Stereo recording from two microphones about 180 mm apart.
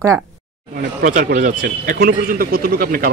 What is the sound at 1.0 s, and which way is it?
A man's voice, 45° right (ahead or behind).